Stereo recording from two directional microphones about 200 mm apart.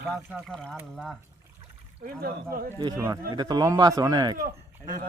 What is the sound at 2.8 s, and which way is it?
Speech, 20° right (ahead or behind).